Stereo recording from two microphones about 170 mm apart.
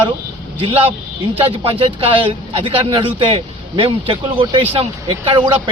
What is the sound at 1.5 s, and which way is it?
A man's voice, 30° right (ahead or behind).